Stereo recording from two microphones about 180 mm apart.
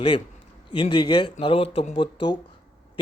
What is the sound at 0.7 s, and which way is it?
A man's voice, 25° left (ahead or behind).